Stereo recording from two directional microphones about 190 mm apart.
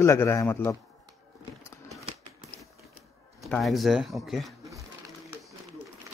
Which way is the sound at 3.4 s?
Centre (ahead or behind).